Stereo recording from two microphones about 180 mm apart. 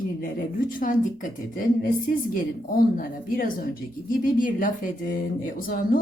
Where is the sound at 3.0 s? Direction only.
55° left (ahead or behind).